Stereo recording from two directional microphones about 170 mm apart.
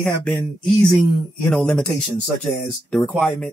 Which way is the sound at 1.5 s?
5° left (ahead or behind).